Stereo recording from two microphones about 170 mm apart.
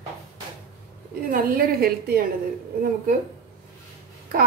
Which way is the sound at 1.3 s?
60° right (ahead or behind).